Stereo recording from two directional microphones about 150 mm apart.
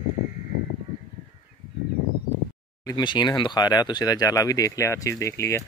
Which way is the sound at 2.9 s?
30° left (ahead or behind).